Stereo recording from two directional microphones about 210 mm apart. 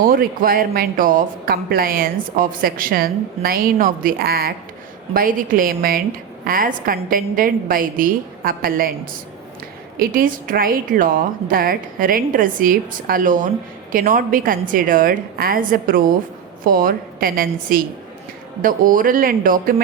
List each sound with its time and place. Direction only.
0.0 s speech: 40° right (ahead or behind)
10.0 s a woman's voice: 40° right (ahead or behind)